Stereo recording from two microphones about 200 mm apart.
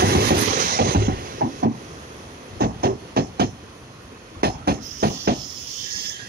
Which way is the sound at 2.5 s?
50° right (ahead or behind).